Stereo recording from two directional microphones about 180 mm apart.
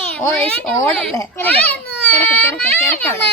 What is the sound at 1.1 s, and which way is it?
A child's voice, 15° left (ahead or behind).